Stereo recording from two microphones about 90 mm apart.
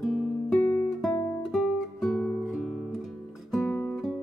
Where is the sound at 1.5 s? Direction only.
5° left (ahead or behind).